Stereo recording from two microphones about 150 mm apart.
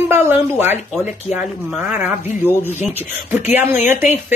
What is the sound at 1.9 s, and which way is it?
Speech, 15° right (ahead or behind).